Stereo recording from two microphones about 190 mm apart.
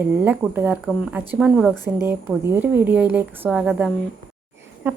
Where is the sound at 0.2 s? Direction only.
10° right (ahead or behind).